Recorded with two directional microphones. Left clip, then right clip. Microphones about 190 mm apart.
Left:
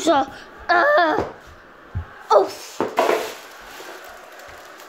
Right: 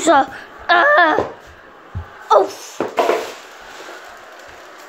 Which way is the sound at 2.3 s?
Centre (ahead or behind).